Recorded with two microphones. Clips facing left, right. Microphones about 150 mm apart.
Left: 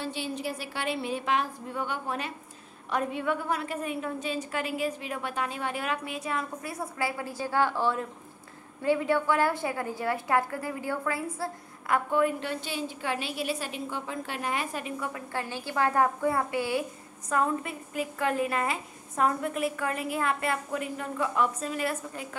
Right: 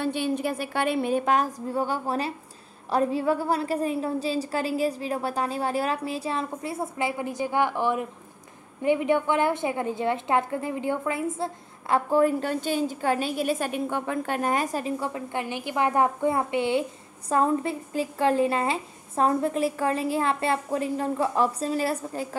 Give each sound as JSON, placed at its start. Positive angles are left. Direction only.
{"t": 0.0, "sound": "a woman's voice", "side_deg": -55}
{"t": 12.1, "sound": "a woman's voice", "side_deg": -35}